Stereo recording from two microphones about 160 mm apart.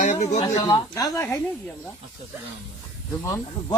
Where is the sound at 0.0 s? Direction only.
50° left (ahead or behind).